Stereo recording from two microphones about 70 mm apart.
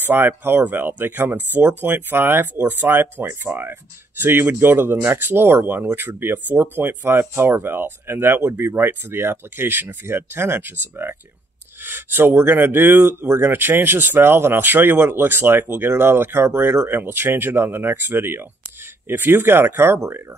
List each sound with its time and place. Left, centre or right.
0.0 s speech: right